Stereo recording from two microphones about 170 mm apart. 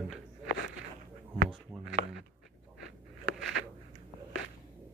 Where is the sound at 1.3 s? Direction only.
70° right (ahead or behind).